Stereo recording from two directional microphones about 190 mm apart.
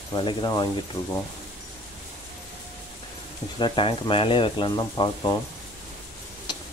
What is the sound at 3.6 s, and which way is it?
Speech, 25° left (ahead or behind).